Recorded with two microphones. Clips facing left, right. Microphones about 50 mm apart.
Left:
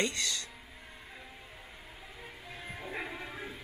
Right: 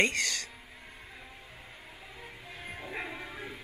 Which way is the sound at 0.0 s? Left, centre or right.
Right.